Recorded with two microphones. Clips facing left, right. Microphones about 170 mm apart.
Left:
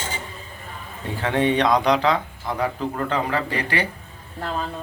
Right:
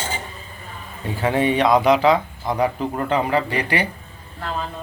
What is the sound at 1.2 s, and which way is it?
A man's voice, 10° right (ahead or behind).